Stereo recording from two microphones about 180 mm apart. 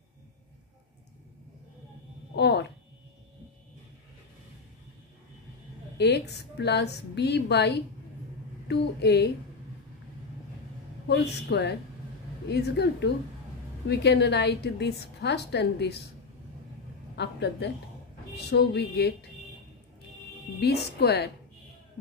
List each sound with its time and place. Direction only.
2.3 s speech: 70° left (ahead or behind)
5.9 s a woman's voice: 65° left (ahead or behind)
11.1 s a woman's voice: 70° left (ahead or behind)
17.1 s a woman's voice: 70° left (ahead or behind)
18.3 s music: 65° left (ahead or behind)
20.6 s music: 65° left (ahead or behind)